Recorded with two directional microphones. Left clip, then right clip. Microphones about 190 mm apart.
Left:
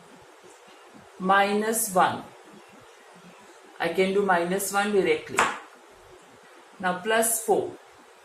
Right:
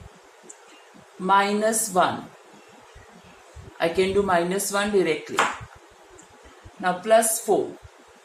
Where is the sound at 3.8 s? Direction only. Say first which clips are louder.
Right 2 dB; 60° right (ahead or behind).